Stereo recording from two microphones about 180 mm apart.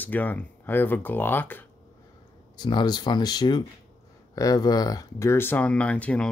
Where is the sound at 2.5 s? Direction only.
25° left (ahead or behind); by 6.3 s 5° left (ahead or behind).